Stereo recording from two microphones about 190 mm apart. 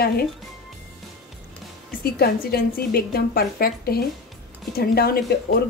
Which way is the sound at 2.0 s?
55° left (ahead or behind).